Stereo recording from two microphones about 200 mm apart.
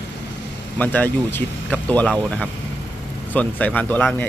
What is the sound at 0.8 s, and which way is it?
A man's voice, 10° left (ahead or behind).